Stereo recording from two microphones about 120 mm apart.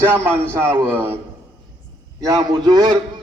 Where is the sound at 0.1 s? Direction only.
15° right (ahead or behind).